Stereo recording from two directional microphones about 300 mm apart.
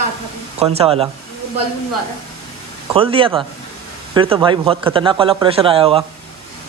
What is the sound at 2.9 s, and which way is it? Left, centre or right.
A man's voice, centre.